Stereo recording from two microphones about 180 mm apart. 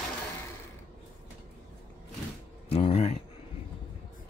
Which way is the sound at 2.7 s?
35° left (ahead or behind).